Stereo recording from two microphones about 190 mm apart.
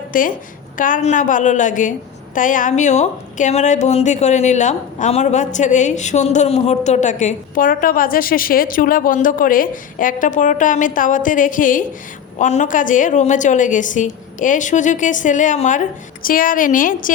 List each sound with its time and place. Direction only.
0.1 s a woman's voice: 45° left (ahead or behind)